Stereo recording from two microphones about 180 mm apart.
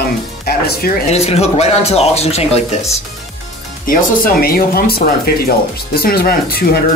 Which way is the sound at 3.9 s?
55° left (ahead or behind).